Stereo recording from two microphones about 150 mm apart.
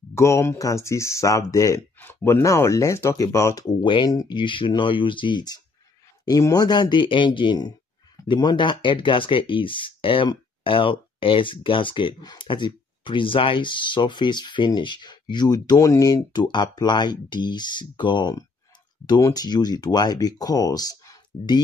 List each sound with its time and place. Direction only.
0.1 s speech: 20° left (ahead or behind)